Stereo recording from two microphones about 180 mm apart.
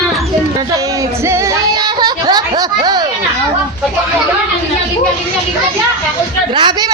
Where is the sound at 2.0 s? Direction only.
20° right (ahead or behind).